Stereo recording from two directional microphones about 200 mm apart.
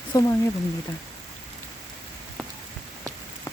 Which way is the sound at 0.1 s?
15° left (ahead or behind).